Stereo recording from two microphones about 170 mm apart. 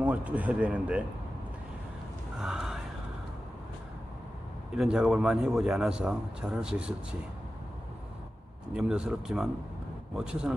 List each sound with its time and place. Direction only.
0.0 s speech: 10° right (ahead or behind)
2.4 s a sound: centre (ahead or behind)
4.7 s a man's voice: 5° right (ahead or behind)
8.7 s a man's voice: 5° right (ahead or behind)